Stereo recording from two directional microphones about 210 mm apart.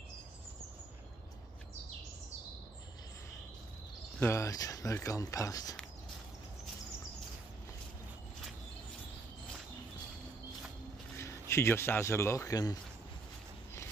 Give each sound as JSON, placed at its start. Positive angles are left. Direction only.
{"t": 4.2, "sound": "speech", "side_deg": 15}
{"t": 11.1, "sound": "speech", "side_deg": 15}